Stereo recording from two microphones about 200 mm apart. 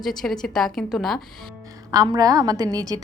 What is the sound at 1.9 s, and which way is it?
A woman's voice, 20° right (ahead or behind).